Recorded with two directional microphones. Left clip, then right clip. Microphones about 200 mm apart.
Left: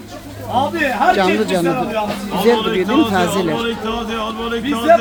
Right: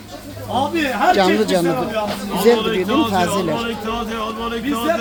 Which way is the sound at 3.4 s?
Centre (ahead or behind).